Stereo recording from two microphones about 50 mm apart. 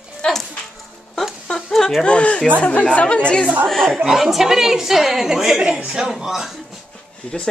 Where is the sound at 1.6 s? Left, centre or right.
Centre.